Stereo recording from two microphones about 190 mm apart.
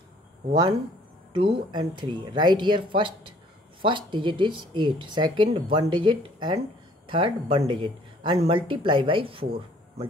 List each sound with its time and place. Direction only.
1.3 s speech: 25° right (ahead or behind)